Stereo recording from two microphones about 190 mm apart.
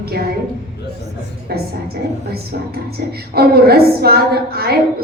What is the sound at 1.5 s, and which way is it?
A woman's voice, 55° right (ahead or behind).